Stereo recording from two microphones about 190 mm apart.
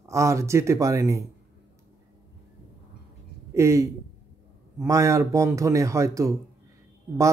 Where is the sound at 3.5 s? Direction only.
15° right (ahead or behind).